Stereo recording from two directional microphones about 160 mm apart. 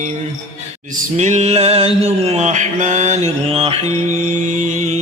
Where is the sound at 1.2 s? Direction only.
45° right (ahead or behind).